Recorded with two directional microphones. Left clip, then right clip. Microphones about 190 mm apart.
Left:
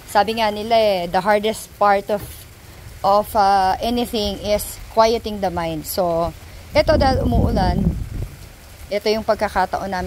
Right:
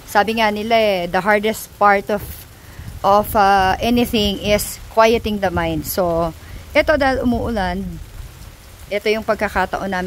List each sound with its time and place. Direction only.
0.1 s a woman's voice: 15° right (ahead or behind)
8.9 s a woman's voice: 15° right (ahead or behind)